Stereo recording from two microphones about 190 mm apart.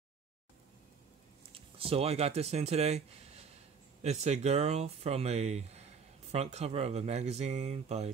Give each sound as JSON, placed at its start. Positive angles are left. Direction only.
{"t": 1.5, "sound": "speech", "side_deg": -30}